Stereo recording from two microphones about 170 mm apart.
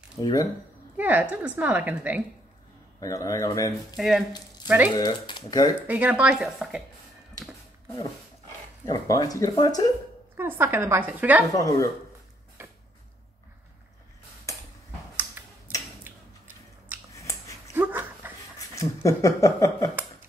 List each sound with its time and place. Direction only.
0.2 s speech: 20° left (ahead or behind)
0.9 s a woman's voice: 10° right (ahead or behind)
3.0 s speech: 20° left (ahead or behind)
3.9 s a woman's voice: centre (ahead or behind)
4.9 s speech: 25° left (ahead or behind)
5.9 s a woman's voice: 10° right (ahead or behind)
8.8 s speech: 20° left (ahead or behind)
10.3 s a woman's voice: 15° right (ahead or behind)
11.5 s speech: 20° left (ahead or behind)
12.6 s a sound: 15° right (ahead or behind)
17.1 s dog: 20° left (ahead or behind)
17.7 s dog: 10° right (ahead or behind)
18.6 s speech: 20° left (ahead or behind)